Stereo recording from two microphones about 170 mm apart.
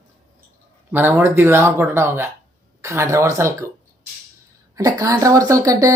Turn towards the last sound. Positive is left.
turn(degrees=-20)  # may be behind; listen again after turning